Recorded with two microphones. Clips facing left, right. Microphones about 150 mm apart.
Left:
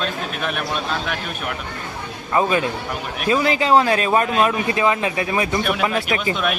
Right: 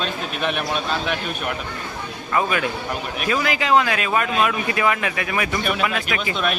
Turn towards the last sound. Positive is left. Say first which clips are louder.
# left 1 dB
turn(degrees=5)  # may be behind; listen again after turning